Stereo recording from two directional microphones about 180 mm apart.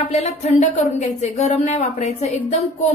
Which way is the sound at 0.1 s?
40° left (ahead or behind).